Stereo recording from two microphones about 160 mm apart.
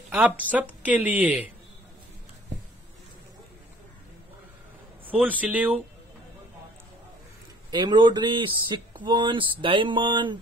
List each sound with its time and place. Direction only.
0.1 s speech: 10° right (ahead or behind)
5.0 s speech: 10° right (ahead or behind)
7.7 s speech: 25° right (ahead or behind)